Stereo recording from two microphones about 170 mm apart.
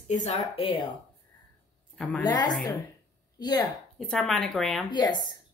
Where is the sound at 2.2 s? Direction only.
25° left (ahead or behind).